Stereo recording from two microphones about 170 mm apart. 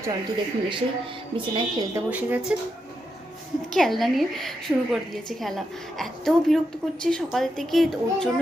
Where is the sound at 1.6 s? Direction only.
25° right (ahead or behind).